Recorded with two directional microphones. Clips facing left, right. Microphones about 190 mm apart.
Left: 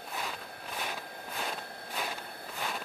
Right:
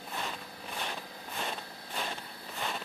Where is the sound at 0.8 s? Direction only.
5° left (ahead or behind).